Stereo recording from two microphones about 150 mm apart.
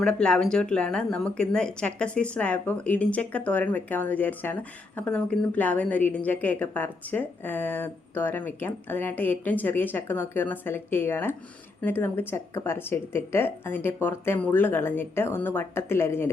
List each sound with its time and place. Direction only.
0.0 s speech: 5° left (ahead or behind)